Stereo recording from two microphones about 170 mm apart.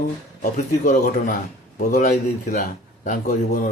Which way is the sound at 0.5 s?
50° left (ahead or behind).